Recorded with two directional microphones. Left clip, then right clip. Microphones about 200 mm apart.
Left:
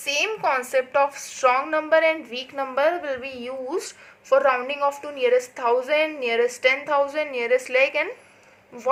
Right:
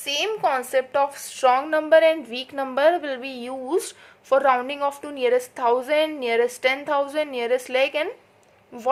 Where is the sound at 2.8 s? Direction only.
85° right.